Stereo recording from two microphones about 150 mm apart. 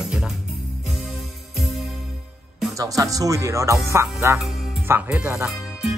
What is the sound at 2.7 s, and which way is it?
Music, 20° right (ahead or behind).